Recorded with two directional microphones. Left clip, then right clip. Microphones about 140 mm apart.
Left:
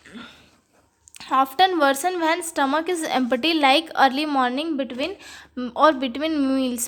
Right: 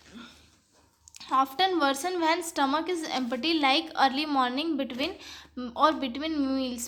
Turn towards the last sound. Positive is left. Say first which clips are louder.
# left 7 dB
turn(degrees=40)  # may be behind; listen again after turning